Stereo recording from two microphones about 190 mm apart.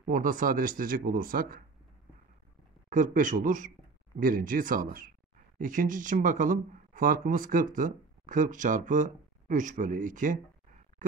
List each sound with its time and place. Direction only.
0.0 s speech: 45° right (ahead or behind)
2.9 s speech: 45° right (ahead or behind)
11.0 s a sound: 45° right (ahead or behind)